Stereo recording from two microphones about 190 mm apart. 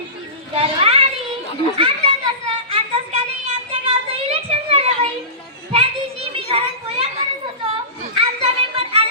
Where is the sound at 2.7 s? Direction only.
30° right (ahead or behind).